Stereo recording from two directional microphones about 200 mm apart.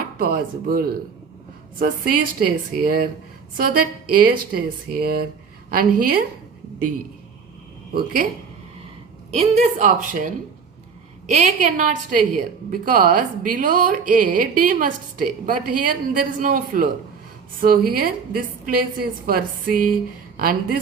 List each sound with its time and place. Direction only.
0.2 s a woman's voice: 45° right (ahead or behind)
7.9 s a woman's voice: 45° right (ahead or behind)
9.3 s a woman's voice: 35° right (ahead or behind)
11.3 s a woman's voice: 35° right (ahead or behind)